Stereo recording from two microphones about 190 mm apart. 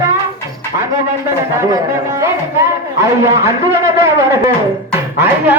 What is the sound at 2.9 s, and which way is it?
Speech, 15° right (ahead or behind).